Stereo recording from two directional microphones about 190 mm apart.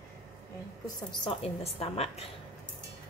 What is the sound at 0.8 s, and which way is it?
A woman's voice, 25° left (ahead or behind).